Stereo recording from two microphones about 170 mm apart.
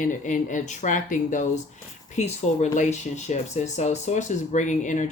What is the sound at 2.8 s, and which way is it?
Speech, 45° left (ahead or behind).